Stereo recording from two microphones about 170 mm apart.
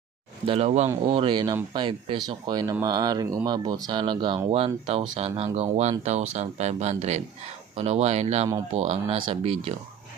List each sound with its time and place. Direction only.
0.5 s speech: 40° right (ahead or behind)